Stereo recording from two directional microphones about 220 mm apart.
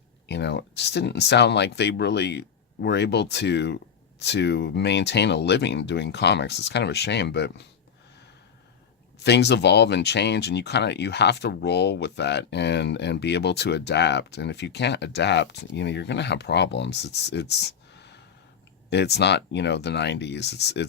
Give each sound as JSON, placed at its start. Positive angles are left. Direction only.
{"t": 0.3, "sound": "speech", "side_deg": 50}
{"t": 9.2, "sound": "speech", "side_deg": 50}